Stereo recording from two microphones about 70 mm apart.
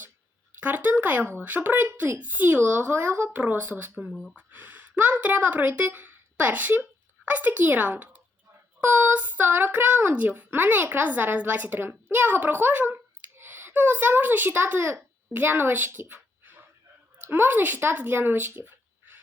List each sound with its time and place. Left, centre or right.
0.6 s a child's voice: right